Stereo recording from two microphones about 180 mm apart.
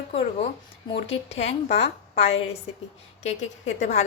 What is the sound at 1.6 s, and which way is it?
Speech, 35° left (ahead or behind).